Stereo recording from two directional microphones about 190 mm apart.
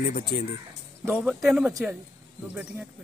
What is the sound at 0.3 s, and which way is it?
Speech, 45° left (ahead or behind).